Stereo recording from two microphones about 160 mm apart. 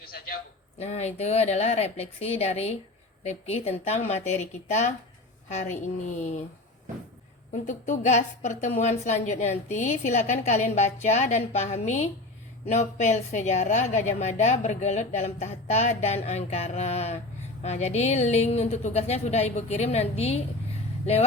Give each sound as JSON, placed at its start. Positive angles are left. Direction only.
{"t": 0.8, "sound": "a woman's voice", "side_deg": 45}
{"t": 7.5, "sound": "a woman's voice", "side_deg": 50}